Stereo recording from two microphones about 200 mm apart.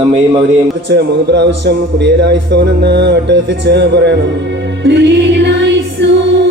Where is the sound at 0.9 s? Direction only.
60° right (ahead or behind).